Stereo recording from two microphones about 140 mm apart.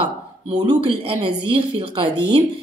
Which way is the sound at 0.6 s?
35° right (ahead or behind).